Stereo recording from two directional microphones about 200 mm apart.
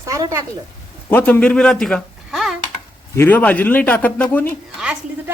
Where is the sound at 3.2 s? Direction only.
10° left (ahead or behind).